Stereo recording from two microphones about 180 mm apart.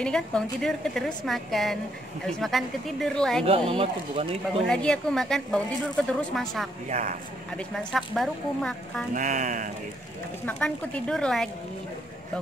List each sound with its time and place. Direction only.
0.0 s speech: 5° left (ahead or behind)
3.4 s speech: 30° right (ahead or behind)
4.6 s speech: 5° left (ahead or behind)
6.9 s speech: 40° right (ahead or behind)
7.5 s speech: centre (ahead or behind)
9.1 s speech: 45° right (ahead or behind)
10.4 s speech: 5° left (ahead or behind)